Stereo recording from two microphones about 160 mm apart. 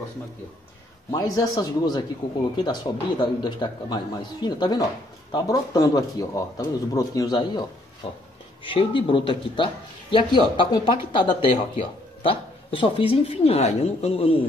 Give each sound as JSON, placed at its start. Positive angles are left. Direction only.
{"t": 1.1, "sound": "a man's voice", "side_deg": 20}
{"t": 8.6, "sound": "speech", "side_deg": 30}